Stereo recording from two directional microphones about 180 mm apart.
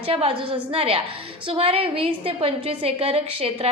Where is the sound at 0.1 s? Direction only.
30° right (ahead or behind).